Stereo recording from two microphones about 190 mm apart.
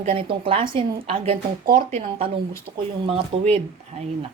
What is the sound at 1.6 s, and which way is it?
Speech, 45° right (ahead or behind).